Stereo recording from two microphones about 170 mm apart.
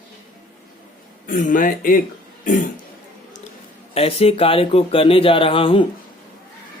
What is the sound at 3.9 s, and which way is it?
Speech, 35° left (ahead or behind).